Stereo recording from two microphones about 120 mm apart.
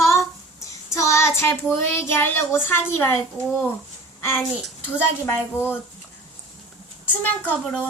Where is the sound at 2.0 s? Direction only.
20° left (ahead or behind).